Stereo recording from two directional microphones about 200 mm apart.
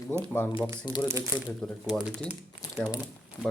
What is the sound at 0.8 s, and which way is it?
Speech, 20° left (ahead or behind).